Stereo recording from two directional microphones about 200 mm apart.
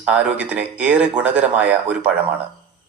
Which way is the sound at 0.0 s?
5° right (ahead or behind).